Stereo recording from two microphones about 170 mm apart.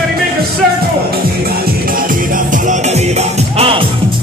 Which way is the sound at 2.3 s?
50° right (ahead or behind).